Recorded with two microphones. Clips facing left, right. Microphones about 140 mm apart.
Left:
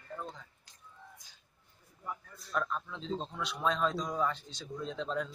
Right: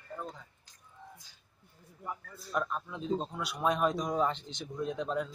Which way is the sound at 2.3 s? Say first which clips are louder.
Right 1 dB; 10° right (ahead or behind).